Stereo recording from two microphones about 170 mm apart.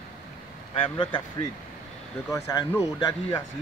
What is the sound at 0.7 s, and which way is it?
Speech, 30° left (ahead or behind).